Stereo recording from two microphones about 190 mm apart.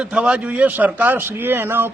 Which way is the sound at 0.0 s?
5° right (ahead or behind).